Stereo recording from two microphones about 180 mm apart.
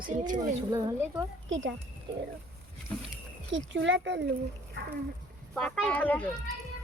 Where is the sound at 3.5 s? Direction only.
90° right.